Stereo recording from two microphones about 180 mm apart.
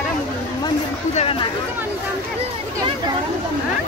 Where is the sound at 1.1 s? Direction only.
30° left (ahead or behind).